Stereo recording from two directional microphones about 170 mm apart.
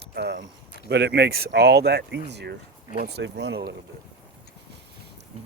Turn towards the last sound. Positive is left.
turn(degrees=-80)